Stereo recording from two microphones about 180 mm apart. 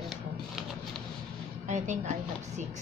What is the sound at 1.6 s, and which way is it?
Speech, 40° right (ahead or behind).